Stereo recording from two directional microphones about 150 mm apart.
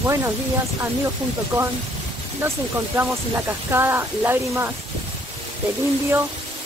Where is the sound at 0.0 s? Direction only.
20° right (ahead or behind).